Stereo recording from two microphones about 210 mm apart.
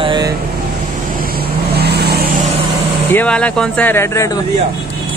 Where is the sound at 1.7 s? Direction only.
50° right (ahead or behind).